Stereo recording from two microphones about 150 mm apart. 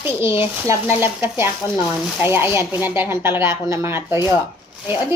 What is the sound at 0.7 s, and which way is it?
A woman's voice, 15° right (ahead or behind).